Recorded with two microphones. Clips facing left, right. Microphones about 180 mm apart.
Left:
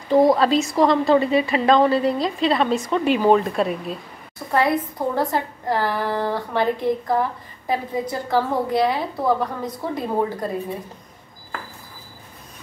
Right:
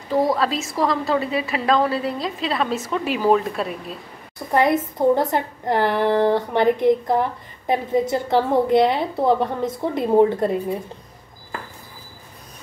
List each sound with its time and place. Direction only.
0.1 s a woman's voice: 20° left (ahead or behind)
0.4 s a woman's voice: centre (ahead or behind)
4.5 s a woman's voice: 20° right (ahead or behind)